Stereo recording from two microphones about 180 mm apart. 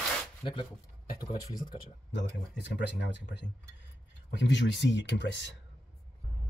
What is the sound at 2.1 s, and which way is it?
Speech, 80° left.